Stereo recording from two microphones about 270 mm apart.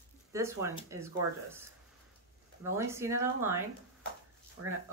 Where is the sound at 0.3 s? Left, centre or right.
Centre.